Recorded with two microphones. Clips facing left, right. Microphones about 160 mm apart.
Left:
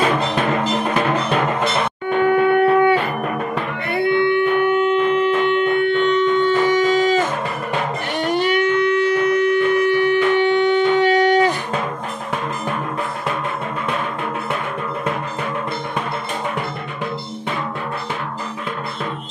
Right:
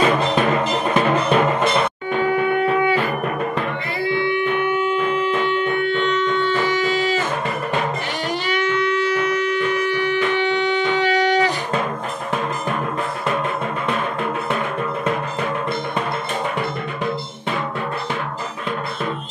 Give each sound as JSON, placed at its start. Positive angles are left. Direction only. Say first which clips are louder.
{"t": 2.2, "sound": "shofar", "louder": "left 5 dB", "side_deg": 60}
{"t": 3.9, "sound": "music", "louder": "left 6 dB", "side_deg": 60}
{"t": 8.2, "sound": "a sound", "louder": "left 7 dB", "side_deg": 55}